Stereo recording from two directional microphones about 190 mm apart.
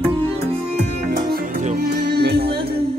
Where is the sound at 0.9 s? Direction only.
40° right (ahead or behind).